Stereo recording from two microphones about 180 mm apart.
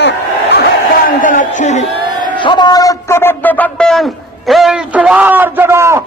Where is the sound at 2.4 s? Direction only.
25° left (ahead or behind).